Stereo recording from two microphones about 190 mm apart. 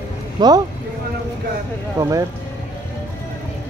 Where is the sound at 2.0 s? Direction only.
15° right (ahead or behind).